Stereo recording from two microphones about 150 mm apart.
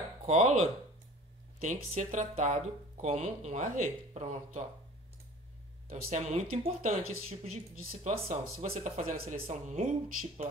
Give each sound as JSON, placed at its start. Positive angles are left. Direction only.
{"t": 0.3, "sound": "speech", "side_deg": -50}
{"t": 6.0, "sound": "speech", "side_deg": -50}
{"t": 7.7, "sound": "speech", "side_deg": -70}